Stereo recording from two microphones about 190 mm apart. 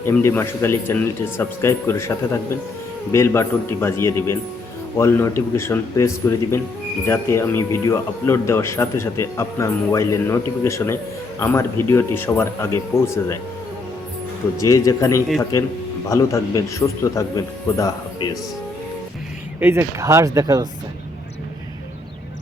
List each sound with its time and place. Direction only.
0.0 s speech: 15° left (ahead or behind)
14.6 s speech: 15° left (ahead or behind)
19.5 s speech: 10° right (ahead or behind)